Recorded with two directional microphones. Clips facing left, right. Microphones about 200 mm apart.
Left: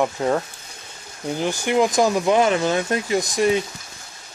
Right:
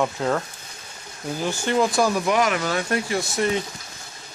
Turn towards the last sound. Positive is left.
turn(degrees=15)  # may be behind; listen again after turning